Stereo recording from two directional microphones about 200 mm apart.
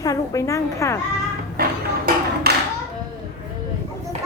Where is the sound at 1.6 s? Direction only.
50° right (ahead or behind).